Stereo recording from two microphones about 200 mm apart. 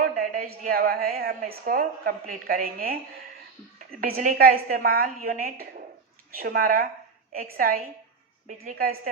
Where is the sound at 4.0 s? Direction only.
40° right (ahead or behind).